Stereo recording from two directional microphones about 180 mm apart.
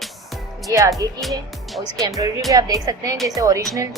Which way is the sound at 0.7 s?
20° right (ahead or behind).